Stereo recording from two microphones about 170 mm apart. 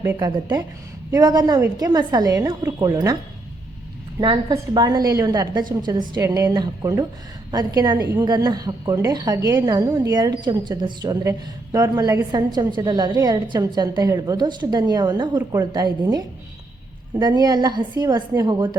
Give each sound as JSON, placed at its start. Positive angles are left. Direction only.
{"t": 0.2, "sound": "a woman's voice", "side_deg": -25}
{"t": 4.2, "sound": "a woman's voice", "side_deg": -25}